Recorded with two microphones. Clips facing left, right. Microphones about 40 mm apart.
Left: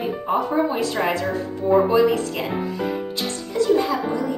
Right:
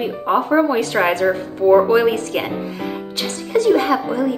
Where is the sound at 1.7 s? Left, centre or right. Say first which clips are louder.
Right 3 dB; right.